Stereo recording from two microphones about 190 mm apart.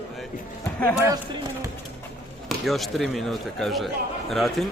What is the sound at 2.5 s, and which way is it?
Speech, centre (ahead or behind).